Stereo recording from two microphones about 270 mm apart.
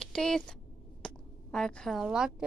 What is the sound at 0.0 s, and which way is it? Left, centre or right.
Speech, centre.